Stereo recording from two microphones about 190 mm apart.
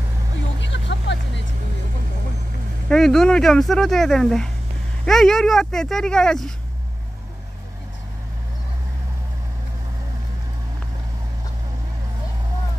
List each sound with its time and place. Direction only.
0.6 s vehicle: 70° left (ahead or behind)
2.9 s speech: centre (ahead or behind)